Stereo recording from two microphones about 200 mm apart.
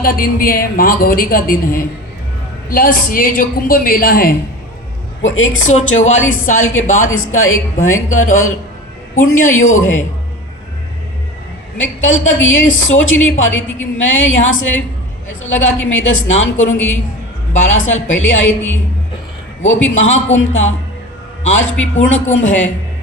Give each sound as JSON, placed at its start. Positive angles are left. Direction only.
{"t": 0.0, "sound": "a woman's voice", "side_deg": 45}
{"t": 5.2, "sound": "a woman's voice", "side_deg": 75}
{"t": 6.5, "sound": "speech", "side_deg": 90}
{"t": 9.6, "sound": "speech", "side_deg": 90}
{"t": 11.8, "sound": "a woman's voice", "side_deg": 75}